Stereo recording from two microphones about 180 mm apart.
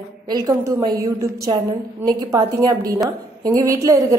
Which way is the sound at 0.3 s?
20° right (ahead or behind).